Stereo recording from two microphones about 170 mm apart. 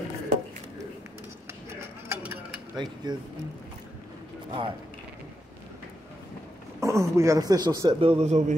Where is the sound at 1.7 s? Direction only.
15° right (ahead or behind).